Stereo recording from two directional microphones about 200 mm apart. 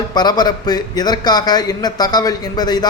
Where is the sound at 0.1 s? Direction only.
20° left (ahead or behind).